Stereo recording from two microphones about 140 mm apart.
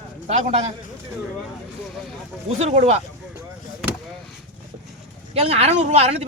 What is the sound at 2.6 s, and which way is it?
Speech, 50° right (ahead or behind).